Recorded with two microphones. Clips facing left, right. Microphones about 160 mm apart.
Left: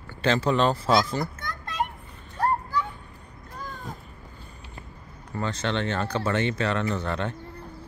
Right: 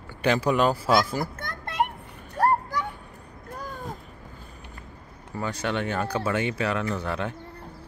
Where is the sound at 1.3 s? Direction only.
55° right (ahead or behind).